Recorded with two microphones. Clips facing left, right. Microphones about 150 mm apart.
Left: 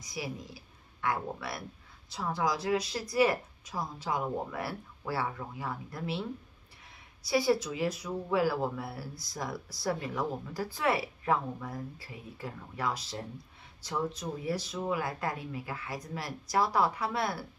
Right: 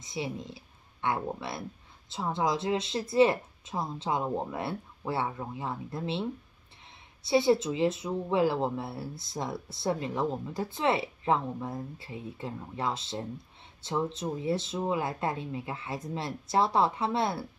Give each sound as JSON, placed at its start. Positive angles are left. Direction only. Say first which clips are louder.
{"t": 0.0, "sound": "speech", "louder": "right 4 dB", "side_deg": -25}
{"t": 7.2, "sound": "speech", "louder": "right 4 dB", "side_deg": -25}